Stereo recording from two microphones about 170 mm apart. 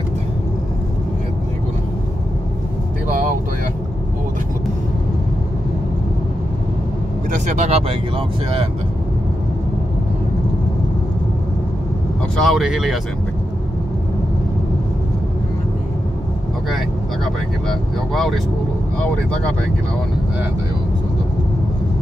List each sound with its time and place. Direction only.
3.1 s vehicle: 55° right (ahead or behind)
7.2 s vehicle: 40° right (ahead or behind)
12.4 s speech: centre (ahead or behind)
18.1 s speech: centre (ahead or behind)